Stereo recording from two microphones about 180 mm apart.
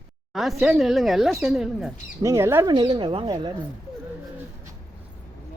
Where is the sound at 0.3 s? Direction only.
Centre (ahead or behind).